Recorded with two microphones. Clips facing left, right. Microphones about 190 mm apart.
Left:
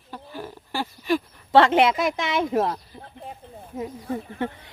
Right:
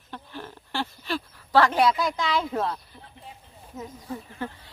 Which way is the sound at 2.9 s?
50° left (ahead or behind).